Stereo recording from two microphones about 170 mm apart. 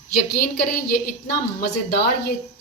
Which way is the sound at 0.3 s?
65° left (ahead or behind).